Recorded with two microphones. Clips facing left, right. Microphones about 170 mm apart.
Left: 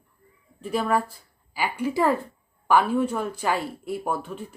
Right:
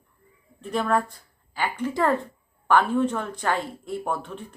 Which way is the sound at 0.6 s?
5° left (ahead or behind).